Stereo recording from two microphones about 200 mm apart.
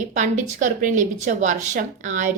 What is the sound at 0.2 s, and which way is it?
A woman's voice, 40° right (ahead or behind).